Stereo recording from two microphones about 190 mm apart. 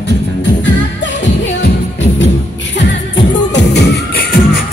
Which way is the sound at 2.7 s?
65° left (ahead or behind).